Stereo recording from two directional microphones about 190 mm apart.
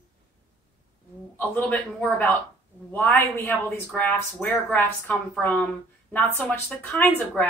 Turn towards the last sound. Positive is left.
turn(degrees=5)  # may be behind; listen again after turning